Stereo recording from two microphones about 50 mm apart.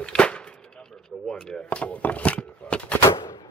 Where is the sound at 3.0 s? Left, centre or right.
Left.